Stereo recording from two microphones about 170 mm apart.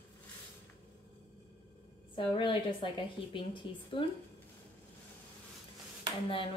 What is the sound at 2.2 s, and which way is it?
Speech, 30° left (ahead or behind).